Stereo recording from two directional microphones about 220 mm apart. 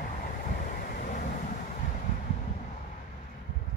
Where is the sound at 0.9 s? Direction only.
40° left (ahead or behind).